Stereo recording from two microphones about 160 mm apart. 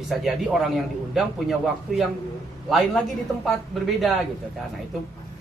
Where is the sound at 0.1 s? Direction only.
Centre (ahead or behind).